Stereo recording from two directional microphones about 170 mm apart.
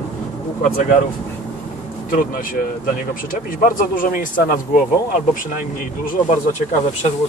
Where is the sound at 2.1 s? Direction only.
55° left (ahead or behind).